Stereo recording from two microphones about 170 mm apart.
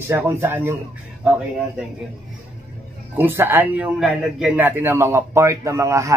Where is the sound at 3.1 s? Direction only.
15° right (ahead or behind).